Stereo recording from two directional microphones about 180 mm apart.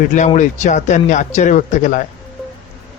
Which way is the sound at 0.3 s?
40° left (ahead or behind).